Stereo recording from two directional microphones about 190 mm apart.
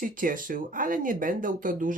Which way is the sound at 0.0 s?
45° right (ahead or behind).